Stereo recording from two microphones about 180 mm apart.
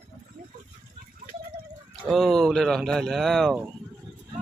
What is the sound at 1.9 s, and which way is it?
Speech, centre (ahead or behind).